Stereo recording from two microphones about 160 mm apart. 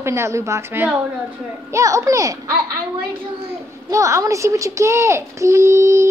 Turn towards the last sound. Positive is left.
turn(degrees=-20)  # may be behind; listen again after turning